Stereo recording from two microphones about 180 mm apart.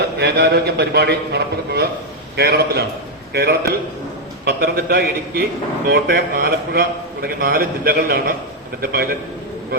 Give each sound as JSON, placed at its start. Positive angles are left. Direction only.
{"t": 0.2, "sound": "a man's voice", "side_deg": -60}